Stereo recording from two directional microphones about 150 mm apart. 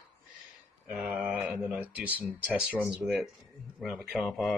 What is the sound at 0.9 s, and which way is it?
Speech, 10° right (ahead or behind).